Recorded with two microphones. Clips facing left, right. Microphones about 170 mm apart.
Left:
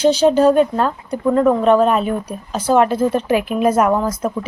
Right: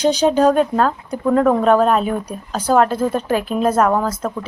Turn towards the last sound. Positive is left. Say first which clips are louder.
# left 1 dB
turn(degrees=10)  # may be behind; listen again after turning